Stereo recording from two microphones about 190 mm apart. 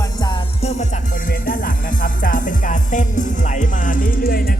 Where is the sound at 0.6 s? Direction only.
35° left (ahead or behind).